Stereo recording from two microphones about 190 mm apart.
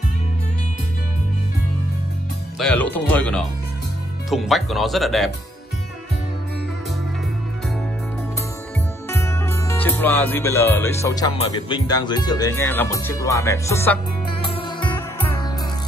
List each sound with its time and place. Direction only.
2.6 s music: 10° left (ahead or behind)
4.3 s speech: centre (ahead or behind)
9.1 s music: 15° left (ahead or behind)
14.4 s music: 25° left (ahead or behind)
15.0 s music: 15° left (ahead or behind)